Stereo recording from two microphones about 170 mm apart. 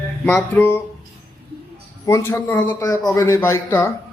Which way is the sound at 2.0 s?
15° left (ahead or behind).